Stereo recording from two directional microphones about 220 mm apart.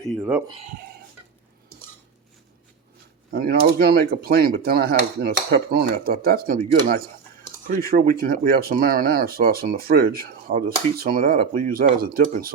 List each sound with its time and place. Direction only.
0.1 s speech: 5° right (ahead or behind)
0.4 s speech: 25° right (ahead or behind)
3.3 s speech: 45° right (ahead or behind)
7.7 s speech: 40° right (ahead or behind)